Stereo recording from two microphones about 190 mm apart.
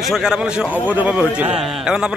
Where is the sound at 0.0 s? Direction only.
Centre (ahead or behind).